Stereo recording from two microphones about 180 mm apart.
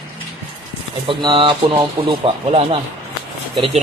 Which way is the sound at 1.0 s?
25° right (ahead or behind).